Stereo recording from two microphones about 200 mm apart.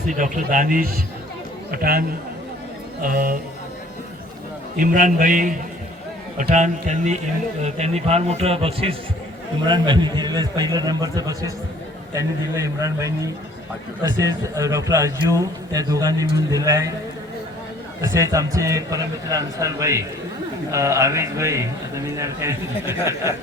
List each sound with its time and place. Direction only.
0.1 s a man's voice: 40° right (ahead or behind)
4.8 s a man's voice: 40° right (ahead or behind); by 16.9 s 15° right (ahead or behind)
18.0 s a man's voice: 15° right (ahead or behind)